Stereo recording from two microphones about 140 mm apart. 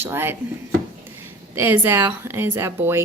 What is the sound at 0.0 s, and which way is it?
Speech, 15° right (ahead or behind).